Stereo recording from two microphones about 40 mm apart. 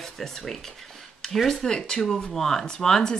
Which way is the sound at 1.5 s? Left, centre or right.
Centre.